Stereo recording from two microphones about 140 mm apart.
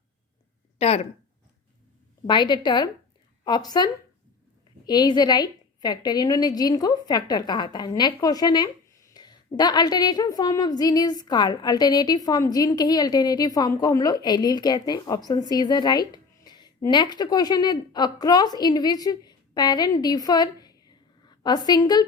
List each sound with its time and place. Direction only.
0.8 s speech: 45° left (ahead or behind)
2.2 s a woman's voice: 30° left (ahead or behind)